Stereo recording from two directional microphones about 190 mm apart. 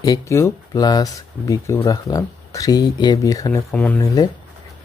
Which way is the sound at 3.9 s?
20° left (ahead or behind).